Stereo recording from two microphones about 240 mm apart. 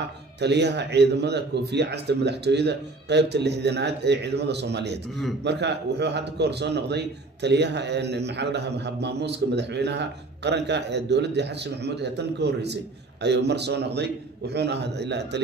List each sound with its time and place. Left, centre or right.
0.4 s a man's voice: right